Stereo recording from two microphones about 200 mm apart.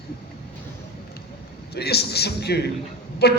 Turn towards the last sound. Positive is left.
turn(degrees=55)  # may be behind; listen again after turning